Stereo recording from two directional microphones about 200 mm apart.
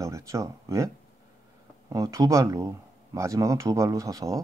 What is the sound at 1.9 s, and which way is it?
Speech, 15° right (ahead or behind).